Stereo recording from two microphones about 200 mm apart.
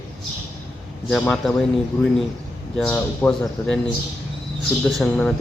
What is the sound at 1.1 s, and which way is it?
Speech, centre (ahead or behind).